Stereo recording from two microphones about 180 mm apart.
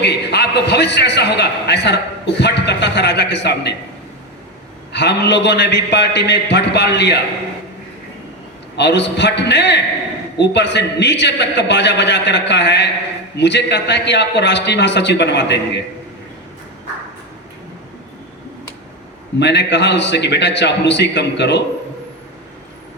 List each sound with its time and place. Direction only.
0.0 s a man's voice: 70° left (ahead or behind)
4.9 s a man's voice: 70° left (ahead or behind)
8.7 s a man's voice: 75° left (ahead or behind)
19.4 s a man's voice: 75° left (ahead or behind)